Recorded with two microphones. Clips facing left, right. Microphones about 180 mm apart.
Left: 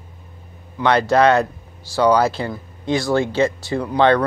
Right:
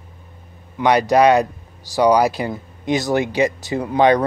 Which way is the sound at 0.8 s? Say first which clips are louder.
Right 1 dB; 15° right (ahead or behind).